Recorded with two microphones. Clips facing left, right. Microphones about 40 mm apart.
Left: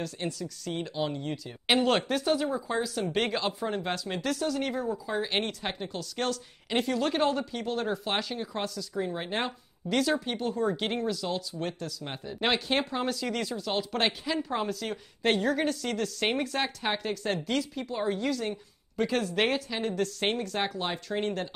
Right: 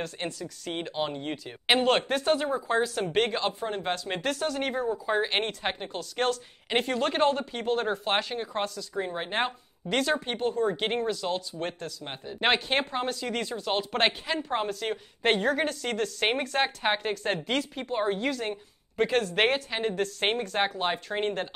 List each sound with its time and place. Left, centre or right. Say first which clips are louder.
0.0 s speech: even; right
3.2 s speech: right 3 dB; centre; by 5.2 s right
5.2 s speech: right 2 dB; right